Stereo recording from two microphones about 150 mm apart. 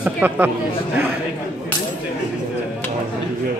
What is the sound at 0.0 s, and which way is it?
Speech, 15° right (ahead or behind).